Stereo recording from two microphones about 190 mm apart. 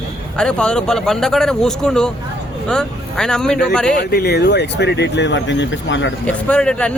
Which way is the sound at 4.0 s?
55° left (ahead or behind).